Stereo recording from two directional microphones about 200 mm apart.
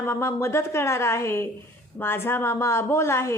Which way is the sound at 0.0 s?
15° left (ahead or behind).